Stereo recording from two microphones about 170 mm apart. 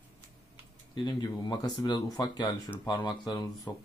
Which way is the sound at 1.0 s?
25° left (ahead or behind).